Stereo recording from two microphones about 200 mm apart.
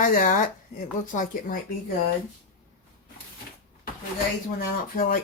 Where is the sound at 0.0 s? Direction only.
45° left (ahead or behind).